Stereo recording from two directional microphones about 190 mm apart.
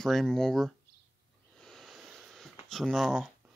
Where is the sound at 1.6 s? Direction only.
Centre (ahead or behind).